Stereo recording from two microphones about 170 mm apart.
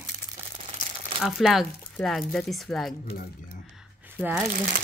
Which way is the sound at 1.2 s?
Centre (ahead or behind).